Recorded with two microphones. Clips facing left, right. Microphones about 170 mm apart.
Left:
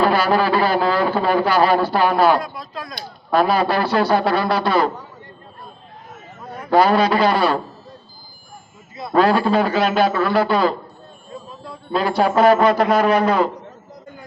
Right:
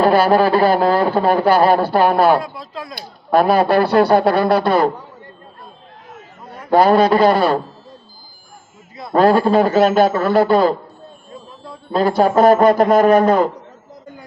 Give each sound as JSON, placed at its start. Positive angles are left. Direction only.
{"t": 0.0, "sound": "a man's voice", "side_deg": -50}
{"t": 2.4, "sound": "speech", "side_deg": -25}
{"t": 3.3, "sound": "a man's voice", "side_deg": -55}
{"t": 6.7, "sound": "a man's voice", "side_deg": -50}
{"t": 9.1, "sound": "a man's voice", "side_deg": -50}
{"t": 11.9, "sound": "a man's voice", "side_deg": -45}